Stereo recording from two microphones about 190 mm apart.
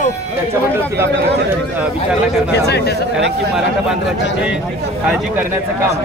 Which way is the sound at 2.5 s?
60° left (ahead or behind).